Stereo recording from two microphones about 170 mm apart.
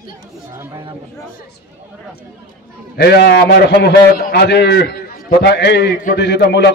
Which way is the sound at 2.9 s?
75° left (ahead or behind).